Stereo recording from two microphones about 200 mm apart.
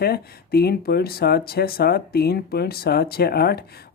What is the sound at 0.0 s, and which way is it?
Speech, 50° left (ahead or behind).